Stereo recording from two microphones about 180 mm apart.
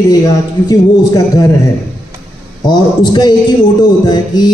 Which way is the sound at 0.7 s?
20° left (ahead or behind).